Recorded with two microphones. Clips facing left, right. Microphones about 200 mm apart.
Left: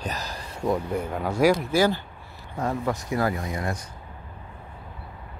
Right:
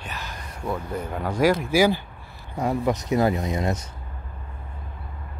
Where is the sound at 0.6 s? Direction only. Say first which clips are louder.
Left 3 dB; 10° left (ahead or behind).